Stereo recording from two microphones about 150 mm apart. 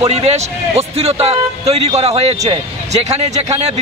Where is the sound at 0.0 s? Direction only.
45° right (ahead or behind).